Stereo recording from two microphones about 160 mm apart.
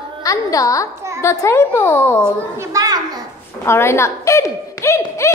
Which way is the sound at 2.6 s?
25° right (ahead or behind).